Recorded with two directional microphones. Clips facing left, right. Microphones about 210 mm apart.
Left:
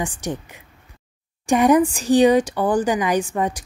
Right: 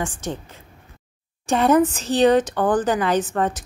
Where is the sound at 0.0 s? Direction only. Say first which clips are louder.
Left 1 dB; 15° left (ahead or behind).